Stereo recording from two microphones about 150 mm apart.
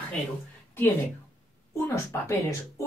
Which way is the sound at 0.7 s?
15° left (ahead or behind).